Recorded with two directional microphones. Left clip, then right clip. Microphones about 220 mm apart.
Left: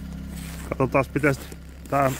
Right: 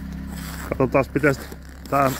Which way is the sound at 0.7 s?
Centre (ahead or behind).